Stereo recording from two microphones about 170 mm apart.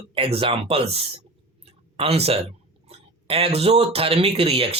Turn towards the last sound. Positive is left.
turn(degrees=-35)  # may be behind; listen again after turning